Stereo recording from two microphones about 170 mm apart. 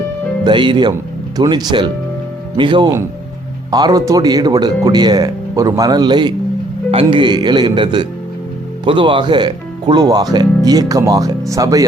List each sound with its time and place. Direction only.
0.4 s speech: 30° right (ahead or behind)